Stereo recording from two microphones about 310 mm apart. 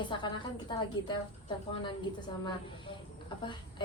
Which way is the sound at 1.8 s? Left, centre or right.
Centre.